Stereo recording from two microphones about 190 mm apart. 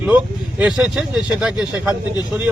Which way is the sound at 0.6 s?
5° right (ahead or behind).